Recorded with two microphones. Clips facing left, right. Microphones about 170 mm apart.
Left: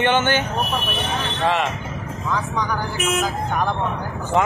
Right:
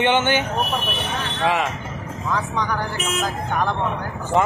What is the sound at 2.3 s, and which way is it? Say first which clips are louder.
Speech: even; centre (ahead or behind).